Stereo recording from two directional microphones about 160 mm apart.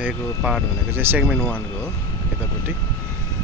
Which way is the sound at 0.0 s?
5° right (ahead or behind).